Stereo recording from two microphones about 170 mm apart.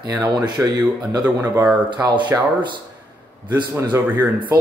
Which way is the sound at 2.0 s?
25° right (ahead or behind).